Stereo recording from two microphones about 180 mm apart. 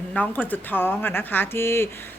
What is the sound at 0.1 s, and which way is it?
A woman's voice, 10° left (ahead or behind).